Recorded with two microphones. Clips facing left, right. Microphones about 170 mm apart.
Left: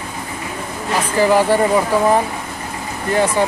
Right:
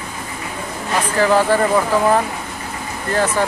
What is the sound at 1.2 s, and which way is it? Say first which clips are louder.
Speech: left 1 dB; 15° left (ahead or behind).